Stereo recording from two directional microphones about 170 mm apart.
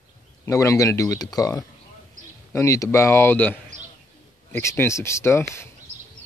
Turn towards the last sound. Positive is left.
turn(degrees=15)  # may be behind; listen again after turning